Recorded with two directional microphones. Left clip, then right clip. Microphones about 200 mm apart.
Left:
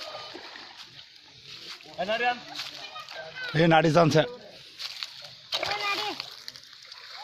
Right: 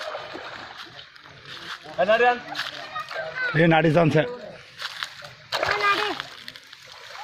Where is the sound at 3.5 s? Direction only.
30° left (ahead or behind).